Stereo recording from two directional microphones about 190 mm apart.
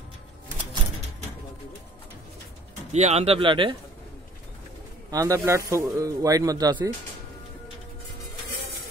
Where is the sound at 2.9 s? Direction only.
35° right (ahead or behind).